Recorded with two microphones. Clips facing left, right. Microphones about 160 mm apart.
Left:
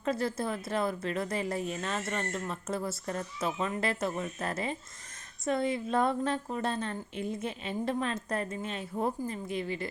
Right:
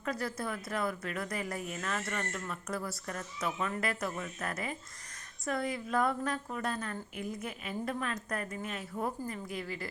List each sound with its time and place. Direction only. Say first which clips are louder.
0.0 s a woman's voice: left 5 dB; 25° left (ahead or behind)